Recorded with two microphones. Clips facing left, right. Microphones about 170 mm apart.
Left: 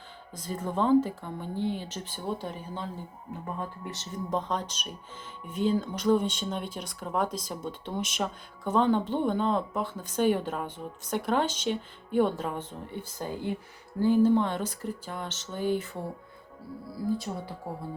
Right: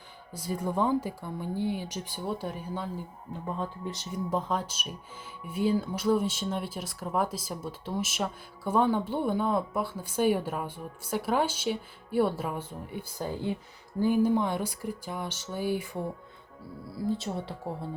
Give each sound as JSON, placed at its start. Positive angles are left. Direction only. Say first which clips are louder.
{"t": 0.3, "sound": "speech", "louder": "right 1 dB", "side_deg": -10}
{"t": 3.9, "sound": "speech", "louder": "left 1 dB", "side_deg": -10}
{"t": 17.1, "sound": "speech", "louder": "even", "side_deg": -25}